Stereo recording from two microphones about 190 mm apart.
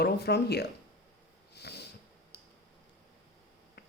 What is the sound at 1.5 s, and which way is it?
Snort, 60° left (ahead or behind).